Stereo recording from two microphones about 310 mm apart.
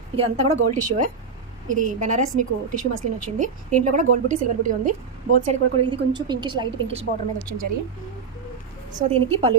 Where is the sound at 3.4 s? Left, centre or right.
Right.